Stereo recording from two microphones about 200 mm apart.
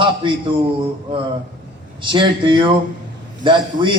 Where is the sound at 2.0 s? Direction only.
25° right (ahead or behind).